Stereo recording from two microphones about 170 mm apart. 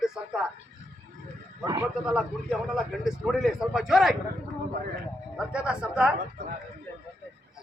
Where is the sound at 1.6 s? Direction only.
20° right (ahead or behind).